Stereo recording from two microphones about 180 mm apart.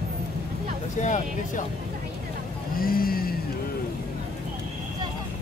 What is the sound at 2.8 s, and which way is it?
Vehicle, 55° left (ahead or behind).